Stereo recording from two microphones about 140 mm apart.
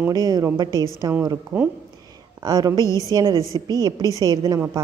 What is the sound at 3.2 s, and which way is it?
A woman's voice, 25° right (ahead or behind).